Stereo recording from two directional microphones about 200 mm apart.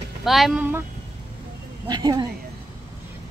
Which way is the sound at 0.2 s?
Centre (ahead or behind).